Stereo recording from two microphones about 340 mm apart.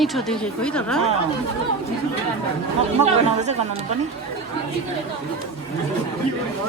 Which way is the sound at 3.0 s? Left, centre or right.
Centre.